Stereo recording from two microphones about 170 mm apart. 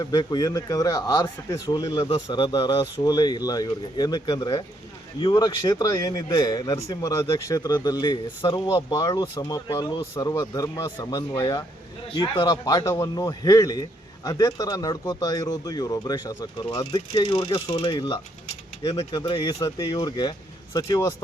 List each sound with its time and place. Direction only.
0.0 s speech: 25° left (ahead or behind)